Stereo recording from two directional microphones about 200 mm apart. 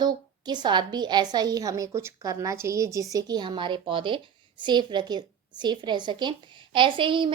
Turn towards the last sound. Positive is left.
turn(degrees=-25)  # may be behind; listen again after turning